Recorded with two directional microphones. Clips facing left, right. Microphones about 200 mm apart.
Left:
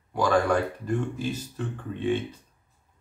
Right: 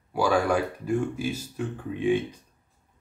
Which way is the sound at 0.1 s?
10° right (ahead or behind).